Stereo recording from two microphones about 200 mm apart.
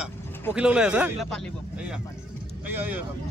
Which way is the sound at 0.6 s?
5° right (ahead or behind).